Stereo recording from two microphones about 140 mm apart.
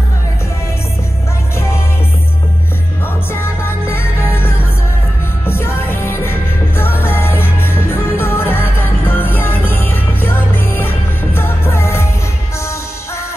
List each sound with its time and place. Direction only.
3.9 s music: 15° left (ahead or behind)